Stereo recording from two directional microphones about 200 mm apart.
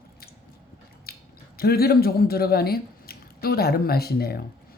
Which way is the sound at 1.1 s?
50° left (ahead or behind).